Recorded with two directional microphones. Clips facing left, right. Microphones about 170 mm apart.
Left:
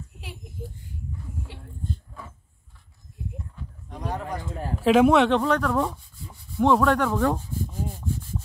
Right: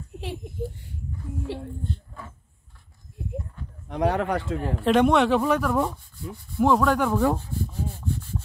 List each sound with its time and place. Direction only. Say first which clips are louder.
3.9 s speech: right 8 dB; 75° right (ahead or behind)
4.8 s speech: left 2 dB; 5° left (ahead or behind)